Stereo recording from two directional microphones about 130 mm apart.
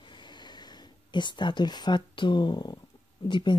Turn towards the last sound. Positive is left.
turn(degrees=40)  # may be behind; listen again after turning